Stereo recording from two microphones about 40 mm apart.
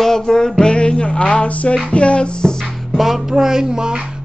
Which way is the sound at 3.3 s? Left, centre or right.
Centre.